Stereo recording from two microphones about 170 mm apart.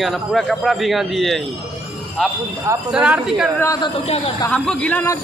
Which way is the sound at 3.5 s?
20° left (ahead or behind).